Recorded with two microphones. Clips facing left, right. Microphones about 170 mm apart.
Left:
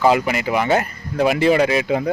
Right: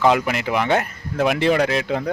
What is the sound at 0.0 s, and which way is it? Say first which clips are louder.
Speech: left 1 dB; 5° left (ahead or behind).